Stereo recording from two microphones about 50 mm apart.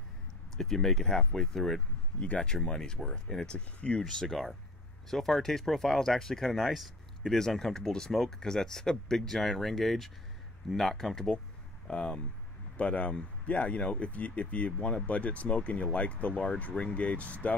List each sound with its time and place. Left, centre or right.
0.6 s speech: centre
2.1 s speech: left
4.0 s speech: centre
7.3 s speech: centre
11.9 s speech: left